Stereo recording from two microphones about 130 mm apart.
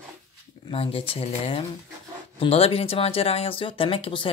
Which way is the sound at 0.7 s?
45° left (ahead or behind).